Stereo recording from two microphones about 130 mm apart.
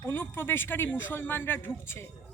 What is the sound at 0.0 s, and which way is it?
Speech, 20° left (ahead or behind).